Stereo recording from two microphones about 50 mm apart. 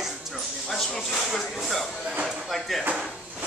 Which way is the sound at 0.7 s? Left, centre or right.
Centre.